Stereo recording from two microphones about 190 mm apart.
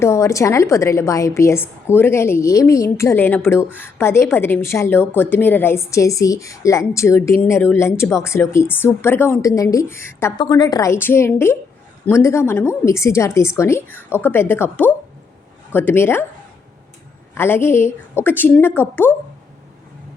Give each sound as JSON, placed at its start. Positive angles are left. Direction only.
{"t": 0.0, "sound": "a woman's voice", "side_deg": 15}
{"t": 17.3, "sound": "a woman's voice", "side_deg": 10}